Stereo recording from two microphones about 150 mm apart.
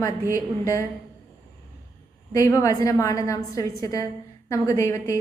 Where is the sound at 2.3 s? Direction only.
20° left (ahead or behind).